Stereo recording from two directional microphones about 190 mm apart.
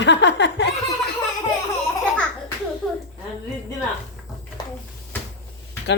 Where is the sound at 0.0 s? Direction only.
70° left (ahead or behind).